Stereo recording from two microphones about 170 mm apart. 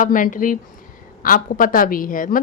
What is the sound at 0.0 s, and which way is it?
A woman's voice, 50° left (ahead or behind).